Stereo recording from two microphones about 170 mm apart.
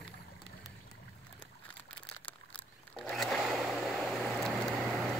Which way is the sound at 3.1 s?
Centre (ahead or behind).